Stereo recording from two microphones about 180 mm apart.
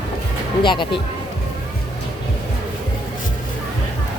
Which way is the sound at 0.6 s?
25° left (ahead or behind).